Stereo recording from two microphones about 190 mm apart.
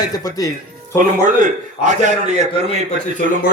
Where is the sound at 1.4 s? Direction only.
40° right (ahead or behind).